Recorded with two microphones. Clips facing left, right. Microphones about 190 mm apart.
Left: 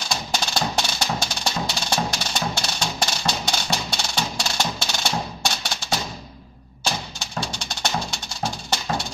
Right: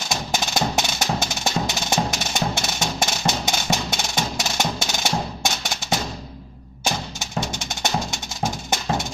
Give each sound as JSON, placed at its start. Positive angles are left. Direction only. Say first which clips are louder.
{"t": 0.1, "sound": "music", "louder": "right 2 dB", "side_deg": -20}